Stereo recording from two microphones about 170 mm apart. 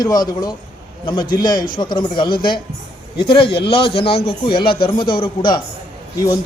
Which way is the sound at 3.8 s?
35° left (ahead or behind).